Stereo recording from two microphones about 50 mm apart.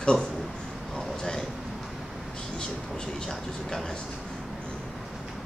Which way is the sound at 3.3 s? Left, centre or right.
Centre.